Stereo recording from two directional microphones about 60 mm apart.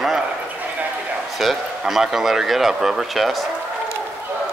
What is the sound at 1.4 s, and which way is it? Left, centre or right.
Speech, centre.